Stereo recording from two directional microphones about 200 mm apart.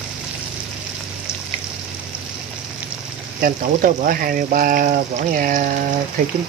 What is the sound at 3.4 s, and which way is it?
Speech, 45° right (ahead or behind).